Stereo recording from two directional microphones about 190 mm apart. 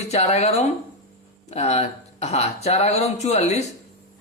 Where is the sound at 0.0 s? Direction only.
35° left (ahead or behind).